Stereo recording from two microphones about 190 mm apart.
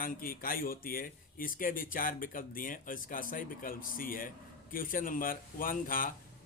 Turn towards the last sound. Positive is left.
turn(degrees=45)  # may be behind; listen again after turning